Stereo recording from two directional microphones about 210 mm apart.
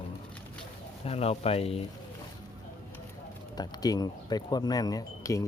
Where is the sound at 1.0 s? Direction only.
30° left (ahead or behind).